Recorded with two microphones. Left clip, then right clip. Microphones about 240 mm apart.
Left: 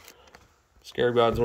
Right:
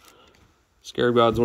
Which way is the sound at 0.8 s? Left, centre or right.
Centre.